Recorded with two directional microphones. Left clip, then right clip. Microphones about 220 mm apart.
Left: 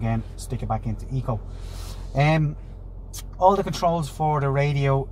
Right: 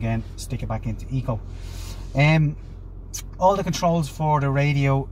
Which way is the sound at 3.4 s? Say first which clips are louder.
Left 1 dB; 25° left (ahead or behind).